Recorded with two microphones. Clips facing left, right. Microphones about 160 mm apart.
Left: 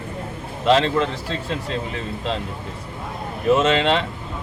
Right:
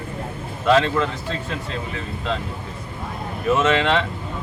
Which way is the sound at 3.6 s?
30° left (ahead or behind).